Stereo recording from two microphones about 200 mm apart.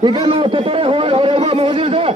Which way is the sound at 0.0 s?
20° right (ahead or behind).